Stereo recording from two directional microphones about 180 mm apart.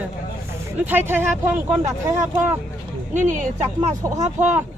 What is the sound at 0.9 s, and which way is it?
Speech, 10° right (ahead or behind).